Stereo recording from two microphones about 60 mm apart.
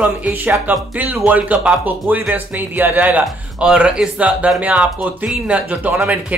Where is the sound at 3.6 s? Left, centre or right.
Centre.